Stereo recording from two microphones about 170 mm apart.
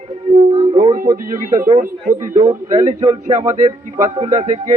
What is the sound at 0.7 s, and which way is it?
A man's voice, 50° right (ahead or behind).